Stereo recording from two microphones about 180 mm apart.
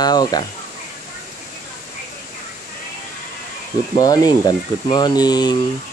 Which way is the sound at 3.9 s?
20° left (ahead or behind).